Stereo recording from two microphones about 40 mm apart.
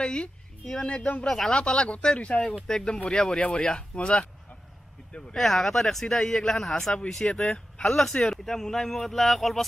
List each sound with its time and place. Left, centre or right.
0.0 s speech: left
0.8 s speech: left
1.2 s speech: centre
1.5 s speech: left
2.6 s speech: centre
5.3 s speech: centre